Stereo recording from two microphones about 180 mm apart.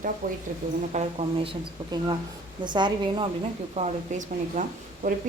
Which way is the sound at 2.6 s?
25° right (ahead or behind).